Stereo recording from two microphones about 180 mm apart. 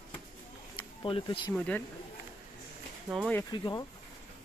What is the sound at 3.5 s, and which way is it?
Speech, 25° left (ahead or behind).